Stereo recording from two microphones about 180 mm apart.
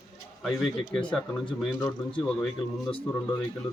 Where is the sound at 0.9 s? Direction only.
5° left (ahead or behind).